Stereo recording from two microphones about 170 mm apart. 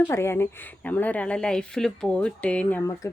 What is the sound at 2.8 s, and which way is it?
Speech, 20° left (ahead or behind).